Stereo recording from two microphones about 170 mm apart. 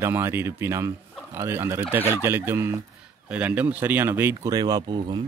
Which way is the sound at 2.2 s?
15° right (ahead or behind).